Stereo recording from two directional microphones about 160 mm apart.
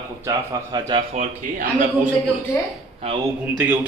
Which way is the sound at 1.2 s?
55° right (ahead or behind).